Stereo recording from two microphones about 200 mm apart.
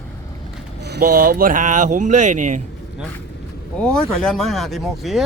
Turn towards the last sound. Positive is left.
turn(degrees=0)  # may be behind; listen again after turning